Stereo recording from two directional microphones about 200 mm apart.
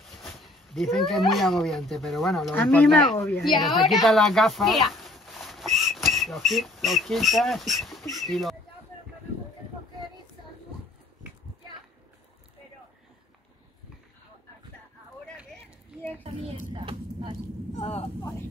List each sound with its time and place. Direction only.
0.0 s speech: centre (ahead or behind)
3.4 s speech: centre (ahead or behind)
16.7 s a sound: 25° right (ahead or behind)
17.7 s speech: 30° left (ahead or behind)